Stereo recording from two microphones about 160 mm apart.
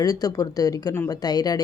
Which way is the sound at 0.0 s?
25° left (ahead or behind).